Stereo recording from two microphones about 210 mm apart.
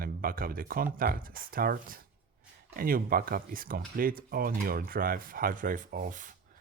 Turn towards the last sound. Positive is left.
turn(degrees=-40)  # may be behind; listen again after turning